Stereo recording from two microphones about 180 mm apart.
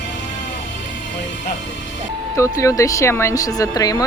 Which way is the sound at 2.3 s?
15° left (ahead or behind).